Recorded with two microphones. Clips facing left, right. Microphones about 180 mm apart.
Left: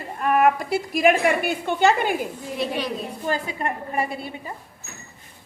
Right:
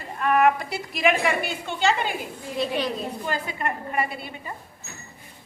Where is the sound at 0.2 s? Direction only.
40° left (ahead or behind).